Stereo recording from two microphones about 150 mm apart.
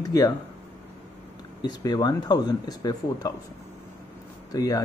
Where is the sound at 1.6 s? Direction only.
25° left (ahead or behind).